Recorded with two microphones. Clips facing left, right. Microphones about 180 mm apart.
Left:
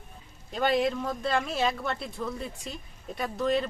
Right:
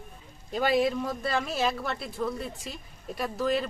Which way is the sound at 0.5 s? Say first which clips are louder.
Right 1 dB; 5° right (ahead or behind).